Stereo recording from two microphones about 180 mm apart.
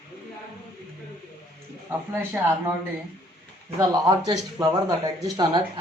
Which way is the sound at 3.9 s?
20° right (ahead or behind).